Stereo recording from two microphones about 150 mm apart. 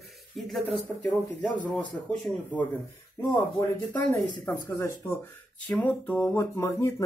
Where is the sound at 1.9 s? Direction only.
10° left (ahead or behind).